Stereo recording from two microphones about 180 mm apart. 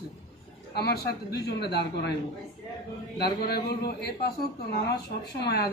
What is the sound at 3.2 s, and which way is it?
A man's voice, 60° left (ahead or behind).